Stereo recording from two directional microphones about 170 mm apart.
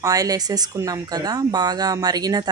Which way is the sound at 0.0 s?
20° right (ahead or behind).